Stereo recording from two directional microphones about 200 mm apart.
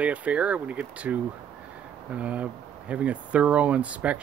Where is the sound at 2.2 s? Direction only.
5° right (ahead or behind).